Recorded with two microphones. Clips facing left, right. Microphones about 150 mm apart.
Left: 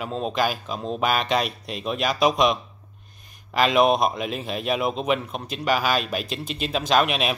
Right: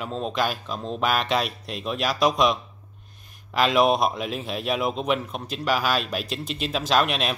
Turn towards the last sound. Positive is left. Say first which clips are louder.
# left 1 dB
turn(degrees=5)  # may be behind; listen again after turning